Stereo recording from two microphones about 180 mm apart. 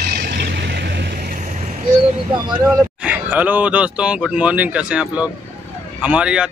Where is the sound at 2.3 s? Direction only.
25° right (ahead or behind).